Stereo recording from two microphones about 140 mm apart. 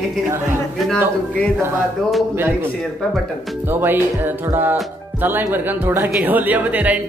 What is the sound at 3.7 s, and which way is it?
Speech, 15° right (ahead or behind).